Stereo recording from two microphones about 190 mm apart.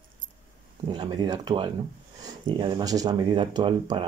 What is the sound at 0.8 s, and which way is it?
Speech, 25° right (ahead or behind).